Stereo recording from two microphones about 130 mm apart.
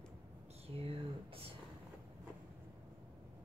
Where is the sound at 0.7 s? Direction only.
45° right (ahead or behind).